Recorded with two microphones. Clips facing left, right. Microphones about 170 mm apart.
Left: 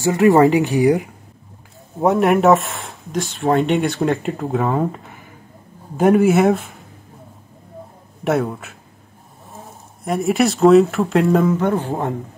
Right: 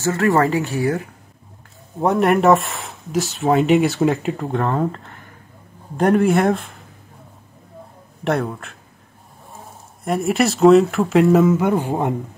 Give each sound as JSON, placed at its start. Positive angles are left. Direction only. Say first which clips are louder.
{"t": 0.0, "sound": "speech", "louder": "left 5 dB", "side_deg": 15}
{"t": 2.0, "sound": "speech", "louder": "left 1 dB", "side_deg": 0}
{"t": 8.2, "sound": "speech", "louder": "left 2 dB", "side_deg": 5}
{"t": 10.0, "sound": "speech", "louder": "left 1 dB", "side_deg": 0}